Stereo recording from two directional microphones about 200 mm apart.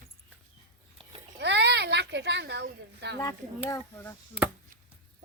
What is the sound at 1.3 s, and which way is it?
Speech, 60° right (ahead or behind).